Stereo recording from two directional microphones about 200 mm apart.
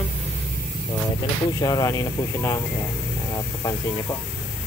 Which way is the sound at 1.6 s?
20° left (ahead or behind).